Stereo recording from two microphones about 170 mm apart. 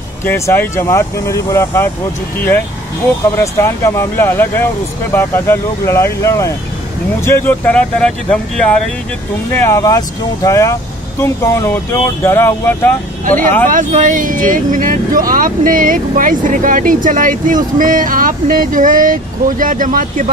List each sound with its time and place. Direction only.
0.2 s speech: 15° left (ahead or behind)
3.3 s speech: 15° left (ahead or behind)
9.5 s speech: 15° left (ahead or behind)
13.7 s speech: 50° right (ahead or behind)